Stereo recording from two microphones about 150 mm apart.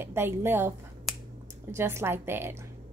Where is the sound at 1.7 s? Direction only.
15° right (ahead or behind).